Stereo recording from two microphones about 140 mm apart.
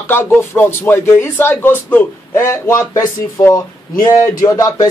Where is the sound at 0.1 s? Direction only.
15° left (ahead or behind).